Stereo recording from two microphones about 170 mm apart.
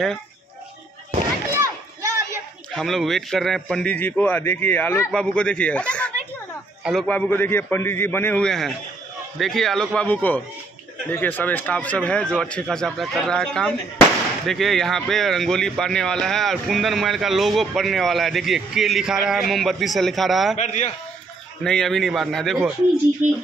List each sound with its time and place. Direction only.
1.5 s children playing: 20° right (ahead or behind)
2.7 s a man's voice: centre (ahead or behind)
20.5 s a man's voice: 45° left (ahead or behind)
21.6 s speech: centre (ahead or behind)
23.2 s speech: 45° right (ahead or behind)